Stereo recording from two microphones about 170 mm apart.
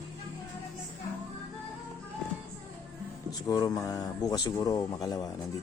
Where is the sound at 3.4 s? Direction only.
20° left (ahead or behind).